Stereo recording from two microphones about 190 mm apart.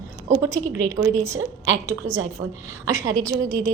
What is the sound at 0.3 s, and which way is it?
A woman's voice, 15° right (ahead or behind).